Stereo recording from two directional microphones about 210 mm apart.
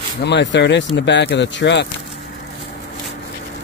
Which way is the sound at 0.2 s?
55° left (ahead or behind).